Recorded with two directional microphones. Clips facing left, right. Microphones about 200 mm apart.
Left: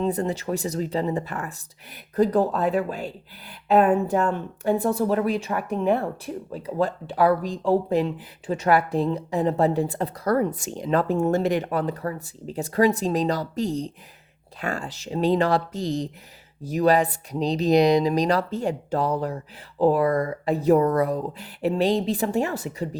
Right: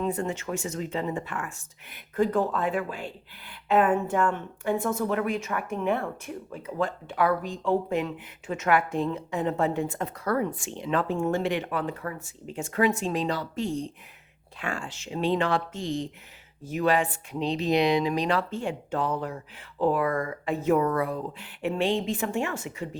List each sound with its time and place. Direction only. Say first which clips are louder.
0.0 s speech: left 4 dB; 35° left (ahead or behind)